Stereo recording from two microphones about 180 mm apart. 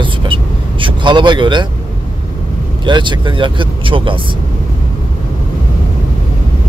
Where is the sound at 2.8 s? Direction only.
25° right (ahead or behind).